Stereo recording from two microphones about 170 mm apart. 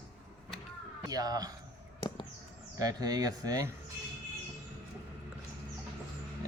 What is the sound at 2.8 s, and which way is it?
Speech, 20° right (ahead or behind).